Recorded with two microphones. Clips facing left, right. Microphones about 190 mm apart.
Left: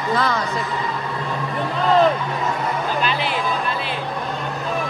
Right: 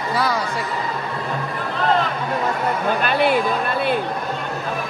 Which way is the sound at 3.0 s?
55° right (ahead or behind).